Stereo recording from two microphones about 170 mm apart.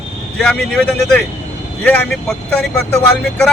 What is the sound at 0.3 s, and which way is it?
Speech, 5° left (ahead or behind).